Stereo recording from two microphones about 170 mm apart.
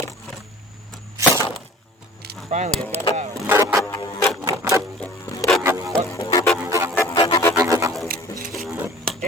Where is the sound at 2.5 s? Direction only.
45° right (ahead or behind).